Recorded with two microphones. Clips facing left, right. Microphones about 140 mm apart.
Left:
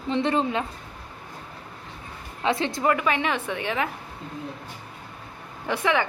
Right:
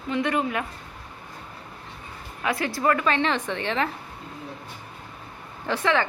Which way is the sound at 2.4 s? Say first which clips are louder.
Left 1 dB; 25° left (ahead or behind).